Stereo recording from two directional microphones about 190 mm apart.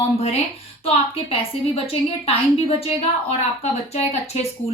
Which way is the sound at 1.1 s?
30° left (ahead or behind).